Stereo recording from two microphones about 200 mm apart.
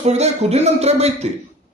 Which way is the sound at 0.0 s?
35° right (ahead or behind).